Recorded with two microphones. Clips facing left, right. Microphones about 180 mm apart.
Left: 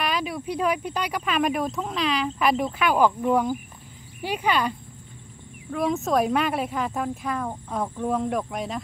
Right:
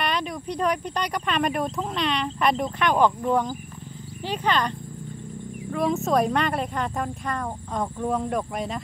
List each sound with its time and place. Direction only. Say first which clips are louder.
0.0 s speech: even; 5° left (ahead or behind)